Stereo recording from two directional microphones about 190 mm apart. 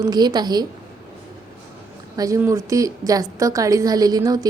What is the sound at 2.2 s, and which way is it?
A woman's voice, 15° right (ahead or behind).